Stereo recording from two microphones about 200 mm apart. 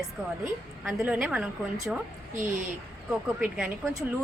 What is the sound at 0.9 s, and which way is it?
Speech, 5° right (ahead or behind).